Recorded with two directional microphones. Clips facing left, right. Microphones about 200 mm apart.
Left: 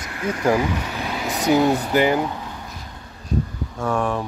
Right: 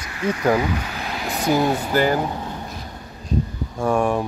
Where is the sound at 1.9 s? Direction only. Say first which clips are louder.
Left 1 dB; 15° left (ahead or behind).